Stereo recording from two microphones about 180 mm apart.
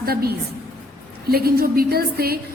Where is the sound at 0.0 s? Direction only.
60° right (ahead or behind).